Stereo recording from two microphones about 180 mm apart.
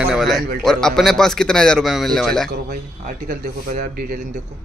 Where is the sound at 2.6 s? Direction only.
50° right (ahead or behind).